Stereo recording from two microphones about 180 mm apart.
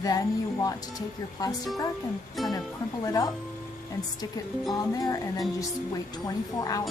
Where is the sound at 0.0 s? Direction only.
20° left (ahead or behind).